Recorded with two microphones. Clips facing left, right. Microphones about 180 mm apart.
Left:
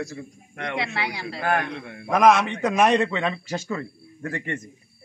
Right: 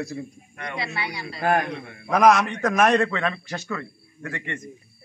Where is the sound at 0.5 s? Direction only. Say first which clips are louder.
Left 3 dB; 85° left.